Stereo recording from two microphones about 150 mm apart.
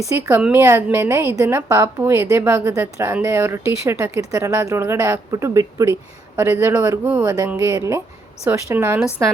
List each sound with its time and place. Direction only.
0.2 s a woman's voice: 15° right (ahead or behind)